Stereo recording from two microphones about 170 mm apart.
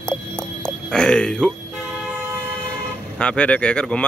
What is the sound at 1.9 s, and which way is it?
Toot, 10° right (ahead or behind).